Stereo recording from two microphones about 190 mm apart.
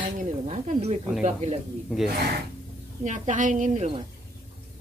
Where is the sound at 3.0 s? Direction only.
40° right (ahead or behind).